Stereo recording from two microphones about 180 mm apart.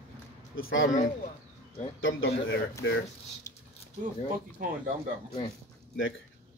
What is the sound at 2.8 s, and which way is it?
Speech, 90° left.